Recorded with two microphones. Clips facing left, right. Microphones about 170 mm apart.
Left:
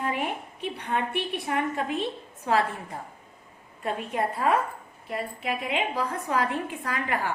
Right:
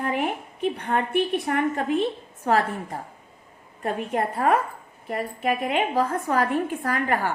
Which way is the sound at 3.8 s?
50° right (ahead or behind).